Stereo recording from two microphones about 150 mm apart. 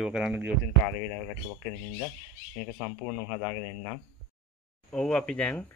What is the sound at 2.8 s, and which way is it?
Speech, centre (ahead or behind).